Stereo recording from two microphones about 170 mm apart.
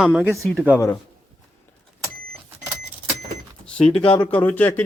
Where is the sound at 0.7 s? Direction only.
20° left (ahead or behind).